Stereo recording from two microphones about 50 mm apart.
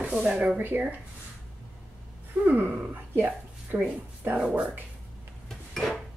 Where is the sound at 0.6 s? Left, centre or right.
Right.